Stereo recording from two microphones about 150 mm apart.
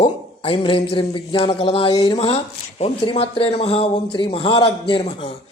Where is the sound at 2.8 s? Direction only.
40° left (ahead or behind).